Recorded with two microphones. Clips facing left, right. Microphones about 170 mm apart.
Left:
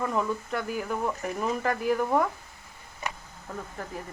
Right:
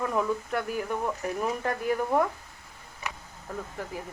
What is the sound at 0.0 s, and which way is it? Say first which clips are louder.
Speech: right 1 dB; centre (ahead or behind).